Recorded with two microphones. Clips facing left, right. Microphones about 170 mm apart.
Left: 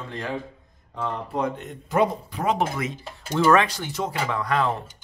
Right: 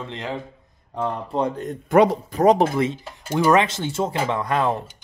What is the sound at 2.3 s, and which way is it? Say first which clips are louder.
Speech: right 8 dB; 40° right (ahead or behind).